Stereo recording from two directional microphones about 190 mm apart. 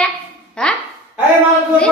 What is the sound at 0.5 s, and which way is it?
Speech, 5° left (ahead or behind).